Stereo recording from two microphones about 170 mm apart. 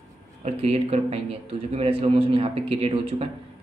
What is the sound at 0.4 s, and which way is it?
A man's voice, 40° right (ahead or behind).